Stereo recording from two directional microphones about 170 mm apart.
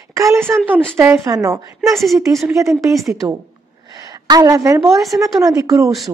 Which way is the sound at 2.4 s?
20° right (ahead or behind).